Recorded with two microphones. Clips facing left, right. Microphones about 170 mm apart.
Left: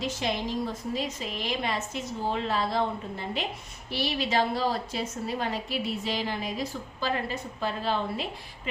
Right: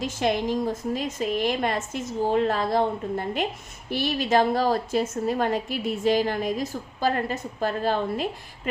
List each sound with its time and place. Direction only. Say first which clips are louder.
0.0 s a woman's voice: right 5 dB; 50° right (ahead or behind)